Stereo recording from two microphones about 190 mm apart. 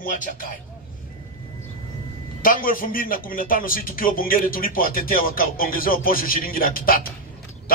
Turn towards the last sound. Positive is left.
turn(degrees=50)  # may be behind; listen again after turning